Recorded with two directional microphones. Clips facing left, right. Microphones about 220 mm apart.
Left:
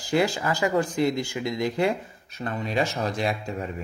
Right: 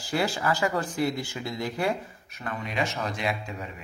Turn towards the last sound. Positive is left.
turn(degrees=35)  # may be behind; listen again after turning